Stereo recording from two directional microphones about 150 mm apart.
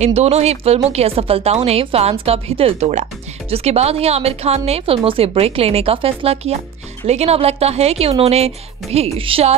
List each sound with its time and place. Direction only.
0.0 s speech: 45° right (ahead or behind)